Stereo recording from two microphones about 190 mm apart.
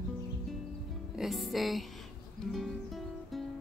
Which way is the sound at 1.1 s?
Centre (ahead or behind).